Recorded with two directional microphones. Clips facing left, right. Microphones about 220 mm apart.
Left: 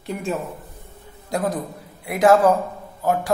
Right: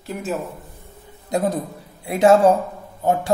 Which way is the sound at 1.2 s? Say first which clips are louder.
Right 2 dB; 25° right (ahead or behind).